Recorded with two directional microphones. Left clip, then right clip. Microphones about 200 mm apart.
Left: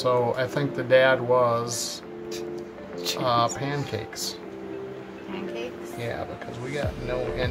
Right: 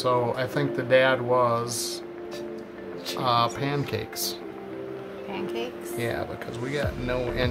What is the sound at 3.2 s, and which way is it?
Speech, 10° right (ahead or behind).